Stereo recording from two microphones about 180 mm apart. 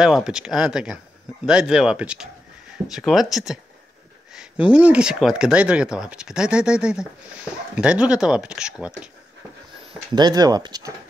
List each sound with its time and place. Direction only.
0.0 s speech: centre (ahead or behind)
10.1 s speech: 20° right (ahead or behind)